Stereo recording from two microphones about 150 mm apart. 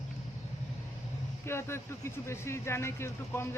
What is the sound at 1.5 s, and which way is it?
Speech, 15° left (ahead or behind).